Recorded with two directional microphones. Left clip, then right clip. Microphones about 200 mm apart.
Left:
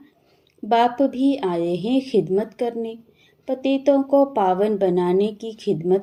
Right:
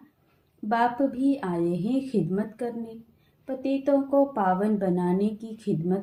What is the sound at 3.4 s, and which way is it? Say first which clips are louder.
A woman's voice: left 7 dB; 25° left (ahead or behind).